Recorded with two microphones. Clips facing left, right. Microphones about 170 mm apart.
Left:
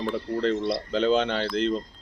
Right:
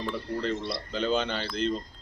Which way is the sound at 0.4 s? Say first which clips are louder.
Left 6 dB; 90° left.